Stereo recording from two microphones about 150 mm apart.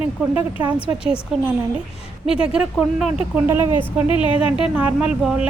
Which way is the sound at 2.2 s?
5° right (ahead or behind).